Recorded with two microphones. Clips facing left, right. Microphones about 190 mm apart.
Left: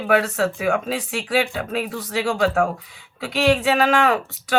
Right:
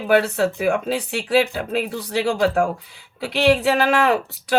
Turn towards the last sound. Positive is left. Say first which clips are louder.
# right 1 dB
turn(degrees=-35)  # may be behind; listen again after turning